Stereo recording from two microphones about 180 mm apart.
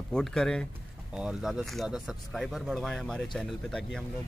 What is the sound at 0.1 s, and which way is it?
Speech, 5° left (ahead or behind).